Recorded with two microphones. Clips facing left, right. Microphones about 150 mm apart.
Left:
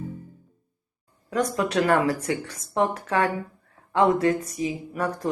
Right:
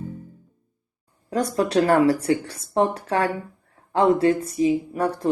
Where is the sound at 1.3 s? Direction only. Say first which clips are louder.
Right 3 dB; 35° right (ahead or behind).